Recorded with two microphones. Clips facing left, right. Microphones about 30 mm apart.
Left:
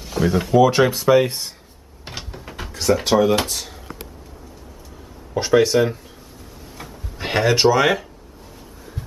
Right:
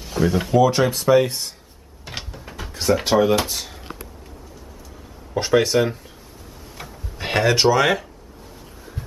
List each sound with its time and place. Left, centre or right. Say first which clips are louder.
0.0 s speech: left 1 dB; centre
0.6 s speech: left 2 dB; centre
2.1 s mechanisms: right 1 dB; left
2.7 s speech: left 1 dB; centre
5.3 s speech: left 2 dB; centre
7.2 s speech: even; centre